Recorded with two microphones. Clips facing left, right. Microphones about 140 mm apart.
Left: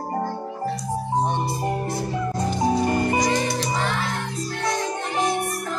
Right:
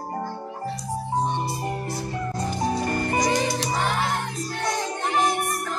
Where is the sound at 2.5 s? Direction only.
15° left (ahead or behind).